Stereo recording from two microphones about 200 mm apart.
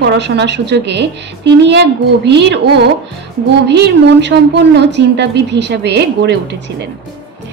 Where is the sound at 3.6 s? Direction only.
60° right (ahead or behind).